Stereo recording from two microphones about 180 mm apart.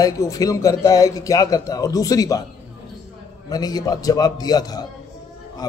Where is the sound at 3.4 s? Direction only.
20° left (ahead or behind).